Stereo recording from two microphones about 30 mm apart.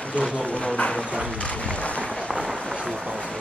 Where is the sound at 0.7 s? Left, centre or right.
Left.